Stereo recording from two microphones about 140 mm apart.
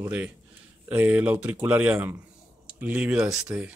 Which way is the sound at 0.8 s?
10° right (ahead or behind).